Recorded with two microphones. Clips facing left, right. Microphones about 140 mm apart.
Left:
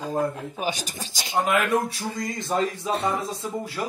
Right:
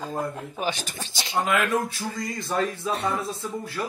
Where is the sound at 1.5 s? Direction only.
20° left (ahead or behind).